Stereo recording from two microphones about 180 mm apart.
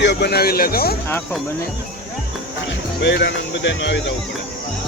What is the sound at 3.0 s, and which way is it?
Speech, 70° left (ahead or behind).